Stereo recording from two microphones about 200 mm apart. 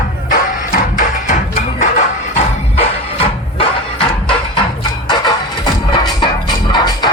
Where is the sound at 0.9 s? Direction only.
40° left (ahead or behind).